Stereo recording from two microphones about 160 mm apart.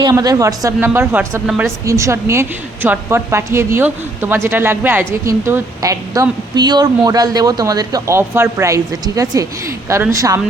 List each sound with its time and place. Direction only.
0.0 s a woman's voice: 25° right (ahead or behind)